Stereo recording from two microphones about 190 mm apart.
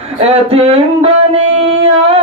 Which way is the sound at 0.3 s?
30° right (ahead or behind).